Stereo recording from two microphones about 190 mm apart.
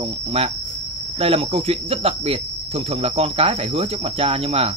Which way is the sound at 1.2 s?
30° right (ahead or behind).